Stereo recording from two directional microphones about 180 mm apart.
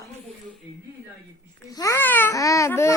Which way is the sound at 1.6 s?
20° left (ahead or behind).